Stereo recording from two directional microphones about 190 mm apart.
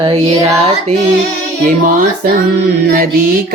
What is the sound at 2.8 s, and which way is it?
Mantra, 50° right (ahead or behind).